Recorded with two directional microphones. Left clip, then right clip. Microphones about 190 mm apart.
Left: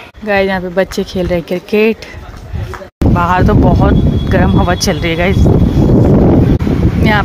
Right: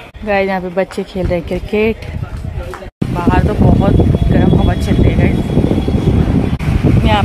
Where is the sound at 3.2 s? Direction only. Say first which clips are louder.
Left 3 dB; 25° left (ahead or behind).